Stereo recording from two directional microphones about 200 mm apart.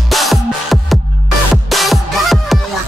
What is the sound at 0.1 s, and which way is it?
Music, centre (ahead or behind).